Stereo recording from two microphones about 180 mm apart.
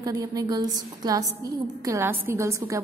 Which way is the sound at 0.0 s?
20° right (ahead or behind).